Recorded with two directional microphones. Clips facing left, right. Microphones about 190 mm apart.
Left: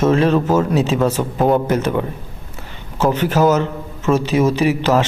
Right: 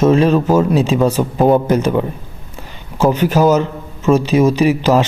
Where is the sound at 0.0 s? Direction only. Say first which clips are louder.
Right 3 dB; 15° right (ahead or behind).